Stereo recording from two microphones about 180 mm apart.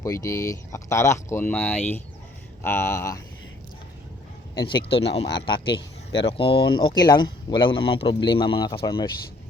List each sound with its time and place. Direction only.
0.0 s speech: 20° left (ahead or behind)
4.5 s speech: 25° left (ahead or behind)
4.8 s speech: 70° left (ahead or behind)
6.1 s speech: 30° left (ahead or behind)